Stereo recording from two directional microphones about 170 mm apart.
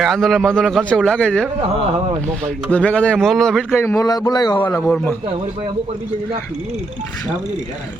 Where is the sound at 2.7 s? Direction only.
5° left (ahead or behind).